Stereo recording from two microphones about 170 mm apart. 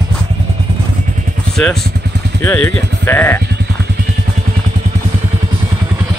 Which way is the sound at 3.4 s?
75° right (ahead or behind).